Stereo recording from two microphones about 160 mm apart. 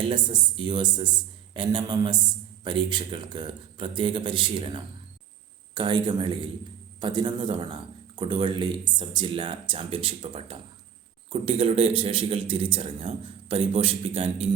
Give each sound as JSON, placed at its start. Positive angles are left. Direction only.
{"t": 0.0, "sound": "a man's voice", "side_deg": -30}